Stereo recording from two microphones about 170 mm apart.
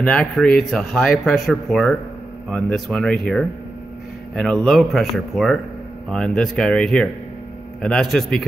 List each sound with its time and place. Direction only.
0.0 s speech: 5° left (ahead or behind)